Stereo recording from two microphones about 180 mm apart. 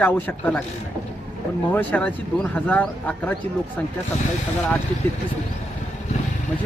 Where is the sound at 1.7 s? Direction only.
10° left (ahead or behind).